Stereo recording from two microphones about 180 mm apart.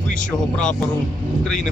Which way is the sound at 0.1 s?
45° left (ahead or behind).